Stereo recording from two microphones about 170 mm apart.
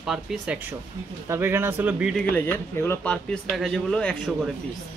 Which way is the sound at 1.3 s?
15° right (ahead or behind).